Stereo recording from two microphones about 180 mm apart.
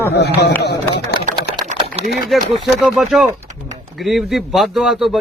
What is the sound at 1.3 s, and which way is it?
Typing, 45° right (ahead or behind).